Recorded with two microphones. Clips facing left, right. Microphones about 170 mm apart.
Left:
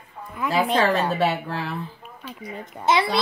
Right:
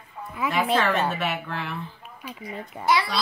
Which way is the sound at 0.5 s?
35° left (ahead or behind).